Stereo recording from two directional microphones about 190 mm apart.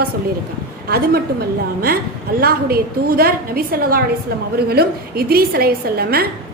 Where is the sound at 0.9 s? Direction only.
55° right (ahead or behind).